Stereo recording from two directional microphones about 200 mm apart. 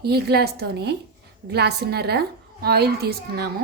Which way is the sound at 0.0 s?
55° right (ahead or behind).